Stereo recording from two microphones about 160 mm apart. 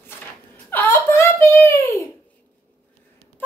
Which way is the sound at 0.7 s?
15° left (ahead or behind).